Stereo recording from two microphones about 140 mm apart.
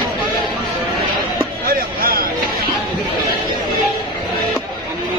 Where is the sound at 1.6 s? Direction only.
90° right.